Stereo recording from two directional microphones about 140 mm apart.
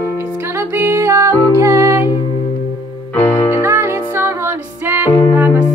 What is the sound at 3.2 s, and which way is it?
Music, 20° left (ahead or behind).